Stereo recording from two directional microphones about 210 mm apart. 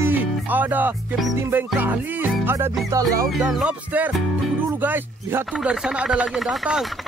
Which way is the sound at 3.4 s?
5° right (ahead or behind).